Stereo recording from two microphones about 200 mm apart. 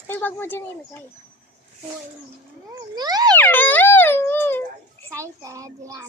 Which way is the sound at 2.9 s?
20° right (ahead or behind).